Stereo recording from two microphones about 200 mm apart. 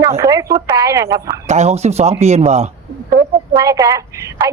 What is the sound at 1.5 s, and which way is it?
A man's voice, 35° right (ahead or behind).